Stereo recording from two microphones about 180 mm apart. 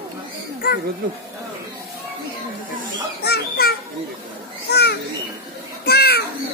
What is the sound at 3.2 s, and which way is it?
Children playing, 60° left (ahead or behind).